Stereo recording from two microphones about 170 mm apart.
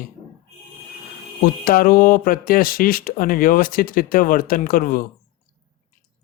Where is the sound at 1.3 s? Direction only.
55° left (ahead or behind).